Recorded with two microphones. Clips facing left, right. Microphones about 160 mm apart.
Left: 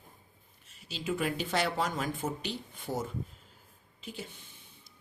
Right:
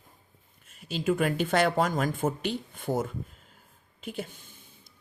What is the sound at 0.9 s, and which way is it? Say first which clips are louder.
A woman's voice: right 6 dB; 50° right (ahead or behind).